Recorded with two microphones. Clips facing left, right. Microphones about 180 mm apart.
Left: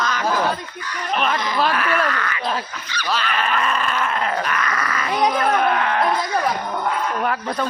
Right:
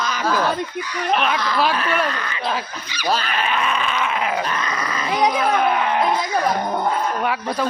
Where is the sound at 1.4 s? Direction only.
20° left (ahead or behind).